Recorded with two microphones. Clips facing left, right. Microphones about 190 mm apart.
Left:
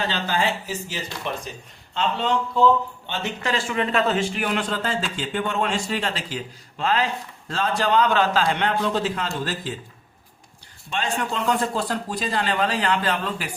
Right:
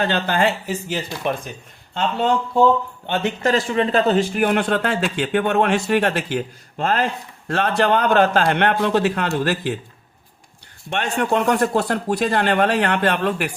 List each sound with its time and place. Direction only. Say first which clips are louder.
0.0 s a man's voice: right 5 dB; 55° right (ahead or behind)
10.8 s a man's voice: right 5 dB; 65° right (ahead or behind)